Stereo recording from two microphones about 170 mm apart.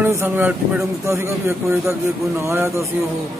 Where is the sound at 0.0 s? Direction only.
15° right (ahead or behind).